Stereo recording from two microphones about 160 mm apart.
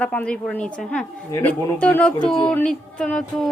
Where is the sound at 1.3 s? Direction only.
15° left (ahead or behind).